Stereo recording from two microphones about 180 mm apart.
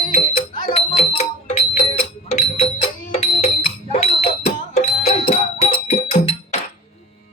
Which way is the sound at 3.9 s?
35° left (ahead or behind).